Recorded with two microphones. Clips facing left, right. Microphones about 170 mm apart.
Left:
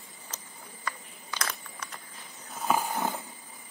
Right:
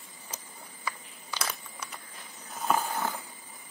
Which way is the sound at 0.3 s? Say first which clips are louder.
Right 1 dB; 10° right (ahead or behind).